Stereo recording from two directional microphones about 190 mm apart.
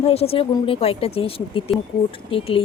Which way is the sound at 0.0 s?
30° left (ahead or behind).